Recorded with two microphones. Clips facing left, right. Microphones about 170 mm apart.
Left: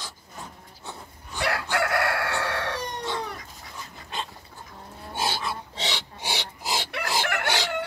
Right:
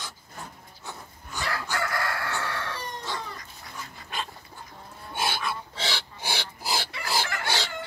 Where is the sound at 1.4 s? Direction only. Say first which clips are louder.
Left 5 dB; 70° left (ahead or behind).